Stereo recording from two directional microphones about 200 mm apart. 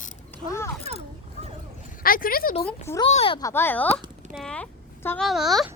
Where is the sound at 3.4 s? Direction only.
10° left (ahead or behind).